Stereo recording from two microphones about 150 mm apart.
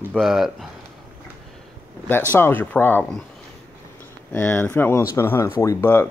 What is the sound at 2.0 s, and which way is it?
Speech, 15° left (ahead or behind).